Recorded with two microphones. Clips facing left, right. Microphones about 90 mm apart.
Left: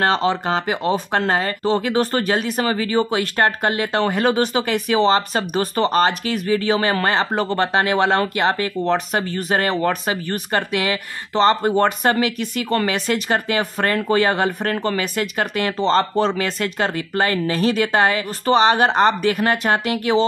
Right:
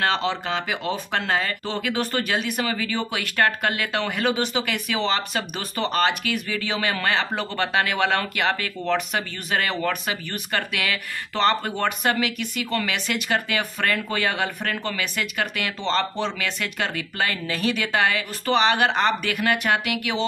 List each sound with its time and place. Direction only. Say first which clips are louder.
0.0 s speech: left 5 dB; 35° left (ahead or behind)
11.7 s speech: left 6 dB; 40° left (ahead or behind)